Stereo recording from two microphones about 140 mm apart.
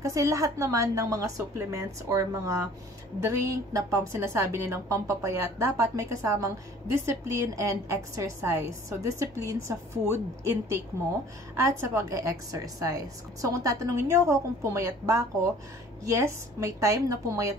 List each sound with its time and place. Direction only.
0.0 s a woman's voice: 25° right (ahead or behind)